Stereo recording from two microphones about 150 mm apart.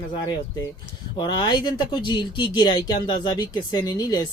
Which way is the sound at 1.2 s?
30° left (ahead or behind).